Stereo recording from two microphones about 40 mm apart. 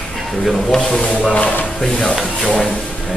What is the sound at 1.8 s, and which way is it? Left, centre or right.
Speech, left.